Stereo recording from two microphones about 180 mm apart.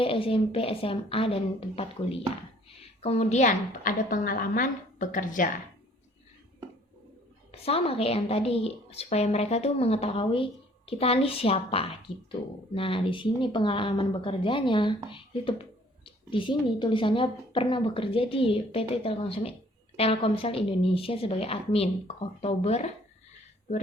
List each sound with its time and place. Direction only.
0.0 s a woman's voice: 30° left (ahead or behind); by 5.5 s 50° left (ahead or behind)
7.5 s a woman's voice: 35° left (ahead or behind)